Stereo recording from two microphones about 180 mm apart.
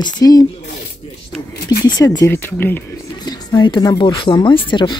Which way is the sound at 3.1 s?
25° left (ahead or behind).